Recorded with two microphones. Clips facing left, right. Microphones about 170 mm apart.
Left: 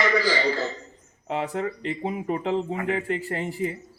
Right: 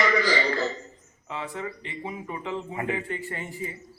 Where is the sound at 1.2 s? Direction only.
40° left (ahead or behind).